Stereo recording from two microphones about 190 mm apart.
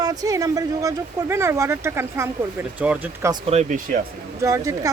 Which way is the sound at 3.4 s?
35° right (ahead or behind).